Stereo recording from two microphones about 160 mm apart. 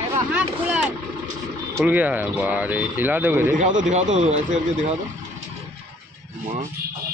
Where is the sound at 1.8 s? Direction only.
10° right (ahead or behind).